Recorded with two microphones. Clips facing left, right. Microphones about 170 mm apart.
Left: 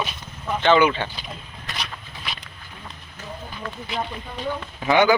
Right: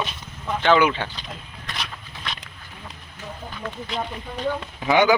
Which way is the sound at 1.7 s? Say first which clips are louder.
Even; 5° left (ahead or behind).